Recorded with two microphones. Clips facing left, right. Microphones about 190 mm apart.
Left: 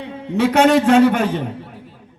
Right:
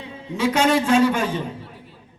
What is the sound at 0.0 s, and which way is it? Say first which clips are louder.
A man's voice: left 5 dB; 60° left (ahead or behind).